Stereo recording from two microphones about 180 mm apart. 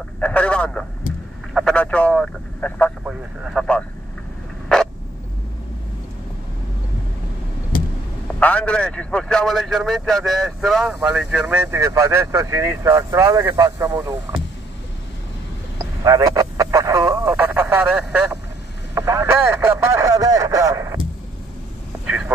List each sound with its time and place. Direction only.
0.2 s a man's voice: 5° left (ahead or behind)
8.4 s a man's voice: 10° left (ahead or behind)
11.6 s speech: 15° right (ahead or behind)
15.8 s radio: 20° right (ahead or behind)
18.9 s speech: 15° right (ahead or behind)
22.0 s vehicle: 5° right (ahead or behind)